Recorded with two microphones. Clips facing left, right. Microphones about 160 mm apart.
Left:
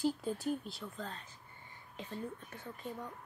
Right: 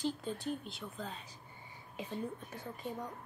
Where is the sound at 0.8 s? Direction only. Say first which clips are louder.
Even; 10° right (ahead or behind).